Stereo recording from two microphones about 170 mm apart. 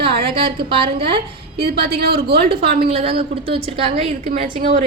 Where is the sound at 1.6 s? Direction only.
70° right (ahead or behind).